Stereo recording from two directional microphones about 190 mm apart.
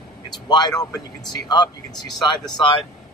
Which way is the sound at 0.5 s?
20° left (ahead or behind).